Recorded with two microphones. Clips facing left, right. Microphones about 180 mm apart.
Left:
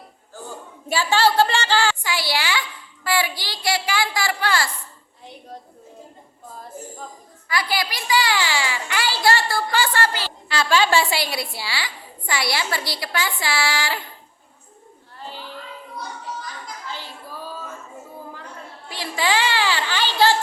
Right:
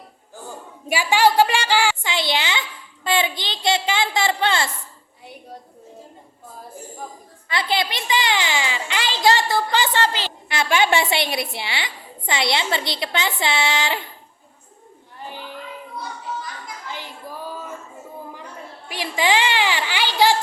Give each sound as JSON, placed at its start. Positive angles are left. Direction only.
{"t": 0.9, "sound": "a woman's voice", "side_deg": -15}
{"t": 7.4, "sound": "a child's voice", "side_deg": -25}
{"t": 16.9, "sound": "a sound", "side_deg": -15}
{"t": 18.9, "sound": "children playing", "side_deg": -15}